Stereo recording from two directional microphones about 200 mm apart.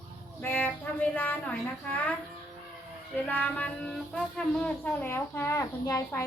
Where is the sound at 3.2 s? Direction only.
10° left (ahead or behind).